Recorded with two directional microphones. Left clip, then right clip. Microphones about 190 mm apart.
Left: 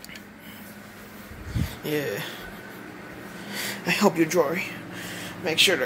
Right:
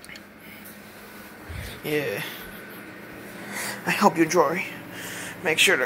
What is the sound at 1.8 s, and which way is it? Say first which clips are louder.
Speech: right 2 dB; 5° left (ahead or behind).